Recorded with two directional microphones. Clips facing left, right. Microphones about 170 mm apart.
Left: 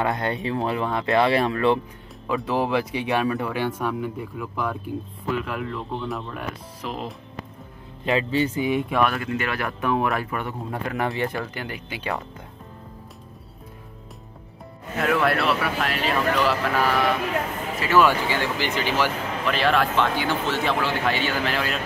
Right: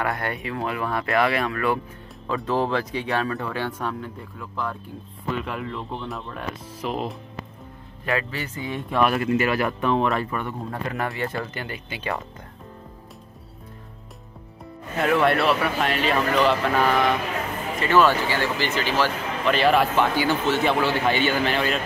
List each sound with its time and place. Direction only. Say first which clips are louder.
0.0 s speech: left 3 dB; 20° left (ahead or behind)
2.2 s a man's voice: even; 10° left (ahead or behind)
8.0 s speech: left 5 dB; 25° left (ahead or behind)
9.0 s speech: right 3 dB; 5° right (ahead or behind); by 12.1 s 10° left (ahead or behind)
15.0 s a man's voice: right 2 dB; centre (ahead or behind); by 19.1 s 15° left (ahead or behind)
19.5 s a man's voice: right 2 dB; centre (ahead or behind)